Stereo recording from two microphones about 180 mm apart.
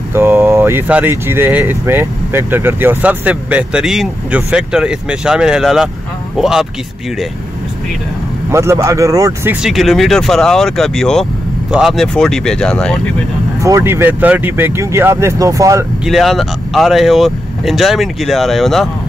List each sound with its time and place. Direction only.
0.1 s speech: 10° right (ahead or behind)
8.5 s speech: 15° right (ahead or behind); by 13.0 s 5° left (ahead or behind)
13.6 s speech: 15° right (ahead or behind)
16.1 s speech: centre (ahead or behind)